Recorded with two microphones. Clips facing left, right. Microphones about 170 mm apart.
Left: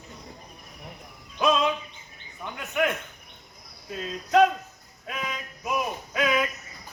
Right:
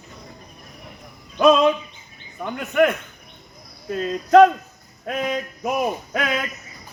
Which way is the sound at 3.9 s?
60° right (ahead or behind).